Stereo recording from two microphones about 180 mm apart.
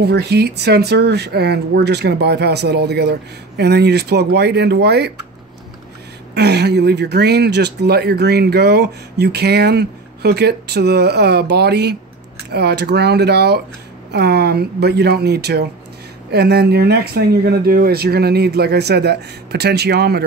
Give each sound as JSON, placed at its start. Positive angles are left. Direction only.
{"t": 0.0, "sound": "speech", "side_deg": -65}
{"t": 6.3, "sound": "speech", "side_deg": -65}